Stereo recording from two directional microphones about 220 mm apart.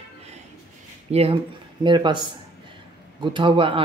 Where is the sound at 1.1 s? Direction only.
25° right (ahead or behind).